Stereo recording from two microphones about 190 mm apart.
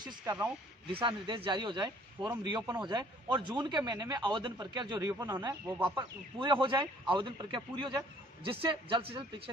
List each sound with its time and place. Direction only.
0.0 s speech: 10° right (ahead or behind)
0.9 s speech: 25° right (ahead or behind)
8.5 s speech: 30° right (ahead or behind)